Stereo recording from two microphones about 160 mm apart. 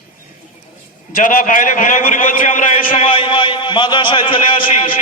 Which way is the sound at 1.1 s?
55° left (ahead or behind).